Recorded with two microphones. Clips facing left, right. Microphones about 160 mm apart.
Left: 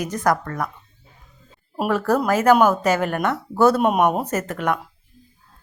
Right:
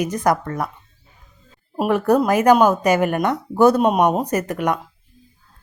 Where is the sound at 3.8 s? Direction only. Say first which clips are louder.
Right 2 dB; 5° left (ahead or behind).